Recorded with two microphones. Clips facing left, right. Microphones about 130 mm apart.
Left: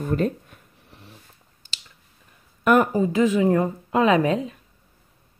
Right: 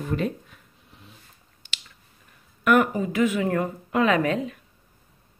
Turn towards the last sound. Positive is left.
turn(degrees=30)  # may be behind; listen again after turning